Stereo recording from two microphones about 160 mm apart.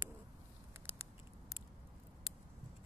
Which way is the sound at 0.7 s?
15° right (ahead or behind).